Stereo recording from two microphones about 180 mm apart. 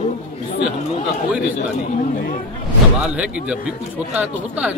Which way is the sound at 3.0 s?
5° right (ahead or behind).